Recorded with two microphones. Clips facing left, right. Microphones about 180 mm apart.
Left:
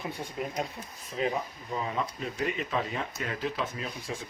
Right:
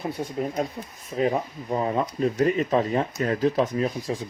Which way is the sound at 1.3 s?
45° right (ahead or behind).